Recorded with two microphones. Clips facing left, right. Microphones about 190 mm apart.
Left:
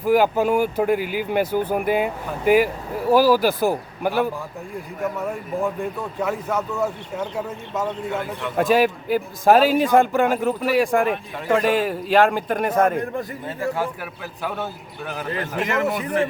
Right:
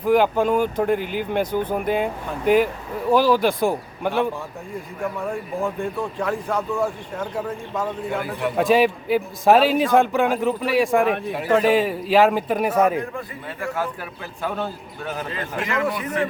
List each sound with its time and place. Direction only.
0.0 s a man's voice: 5° left (ahead or behind)
5.6 s a man's voice: 5° left (ahead or behind)
8.2 s a man's voice: 10° right (ahead or behind)
13.6 s speech: 15° left (ahead or behind)
14.4 s a man's voice: 5° left (ahead or behind)
15.6 s speech: 45° left (ahead or behind)